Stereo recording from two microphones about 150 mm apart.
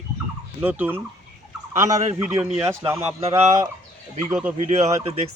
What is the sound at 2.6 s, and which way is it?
Speech, 20° right (ahead or behind).